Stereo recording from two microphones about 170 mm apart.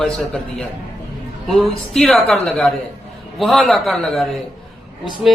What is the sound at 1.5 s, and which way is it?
Speech, centre (ahead or behind).